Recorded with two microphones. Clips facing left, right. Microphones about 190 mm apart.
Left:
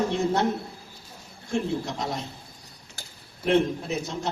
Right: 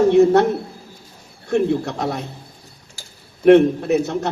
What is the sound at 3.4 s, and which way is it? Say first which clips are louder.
Speech: right 11 dB; 60° right (ahead or behind).